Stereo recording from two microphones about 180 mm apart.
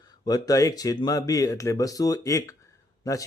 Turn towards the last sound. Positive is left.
turn(degrees=20)  # may be behind; listen again after turning